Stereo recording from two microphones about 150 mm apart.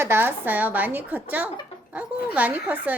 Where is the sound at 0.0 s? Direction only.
15° right (ahead or behind).